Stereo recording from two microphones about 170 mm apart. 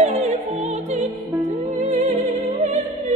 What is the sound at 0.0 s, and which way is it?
Opera, 40° right (ahead or behind).